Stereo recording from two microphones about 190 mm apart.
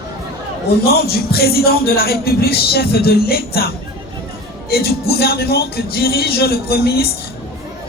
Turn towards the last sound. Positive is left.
turn(degrees=55)  # may be behind; listen again after turning